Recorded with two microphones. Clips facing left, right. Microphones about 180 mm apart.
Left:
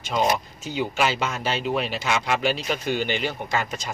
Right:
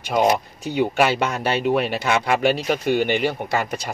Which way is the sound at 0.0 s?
60° right (ahead or behind).